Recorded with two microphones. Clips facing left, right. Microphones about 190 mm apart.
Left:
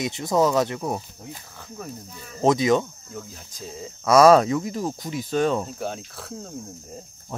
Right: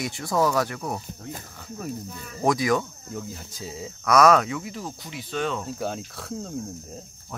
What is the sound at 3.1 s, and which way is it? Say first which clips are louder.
Speech: right 2 dB; 5° right (ahead or behind).